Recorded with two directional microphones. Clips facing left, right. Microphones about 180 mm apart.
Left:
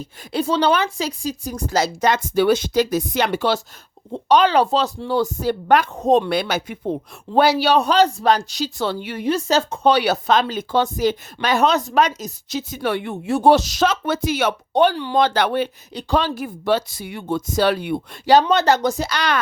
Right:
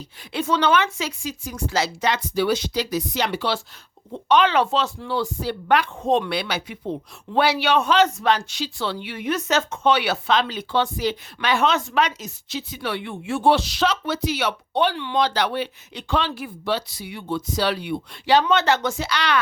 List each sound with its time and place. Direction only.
0.3 s speech: 35° left (ahead or behind)
4.1 s speech: 35° left (ahead or behind)